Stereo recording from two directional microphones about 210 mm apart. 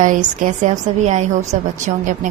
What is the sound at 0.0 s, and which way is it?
A woman's voice, 40° right (ahead or behind).